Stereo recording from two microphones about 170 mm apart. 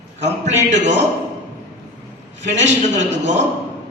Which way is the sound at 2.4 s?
45° right (ahead or behind).